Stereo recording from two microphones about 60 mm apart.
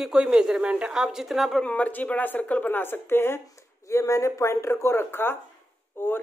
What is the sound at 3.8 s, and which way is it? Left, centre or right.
A woman's voice, left.